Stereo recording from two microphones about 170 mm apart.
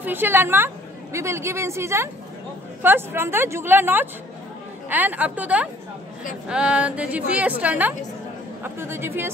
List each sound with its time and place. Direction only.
0.0 s a woman's voice: 10° right (ahead or behind)